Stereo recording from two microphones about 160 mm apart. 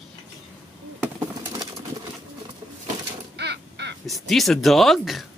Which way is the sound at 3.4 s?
90° right.